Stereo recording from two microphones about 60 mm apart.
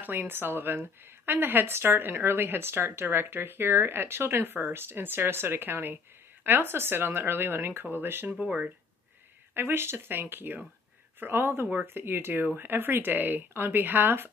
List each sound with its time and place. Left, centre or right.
0.0 s a woman's voice: right
8.4 s speech: centre
9.5 s a woman's voice: right